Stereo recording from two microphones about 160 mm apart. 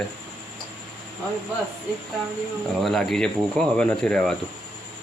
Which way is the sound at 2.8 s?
Centre (ahead or behind).